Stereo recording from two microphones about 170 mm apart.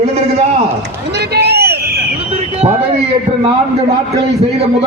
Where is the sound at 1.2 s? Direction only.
70° right (ahead or behind).